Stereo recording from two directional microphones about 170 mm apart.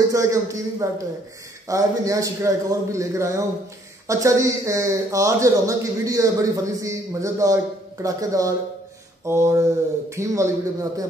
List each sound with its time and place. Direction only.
0.1 s speech: 20° right (ahead or behind)